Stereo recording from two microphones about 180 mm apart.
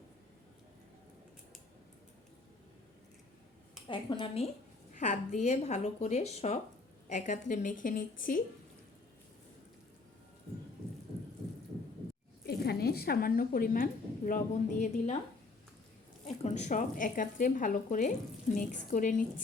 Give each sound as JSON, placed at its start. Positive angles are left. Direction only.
{"t": 3.8, "sound": "speech", "side_deg": 30}
{"t": 12.5, "sound": "a woman's voice", "side_deg": 60}
{"t": 16.2, "sound": "speech", "side_deg": 40}